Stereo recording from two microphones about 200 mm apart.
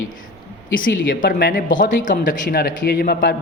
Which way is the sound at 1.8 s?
40° left (ahead or behind).